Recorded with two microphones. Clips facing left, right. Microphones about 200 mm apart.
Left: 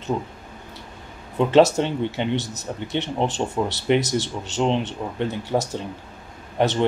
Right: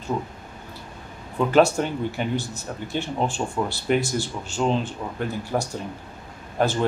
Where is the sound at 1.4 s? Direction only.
25° left (ahead or behind).